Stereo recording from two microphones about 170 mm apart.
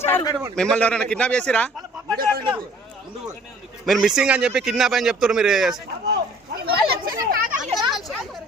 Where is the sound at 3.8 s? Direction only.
Centre (ahead or behind).